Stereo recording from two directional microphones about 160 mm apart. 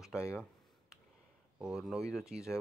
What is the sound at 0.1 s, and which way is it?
Speech, 20° left (ahead or behind).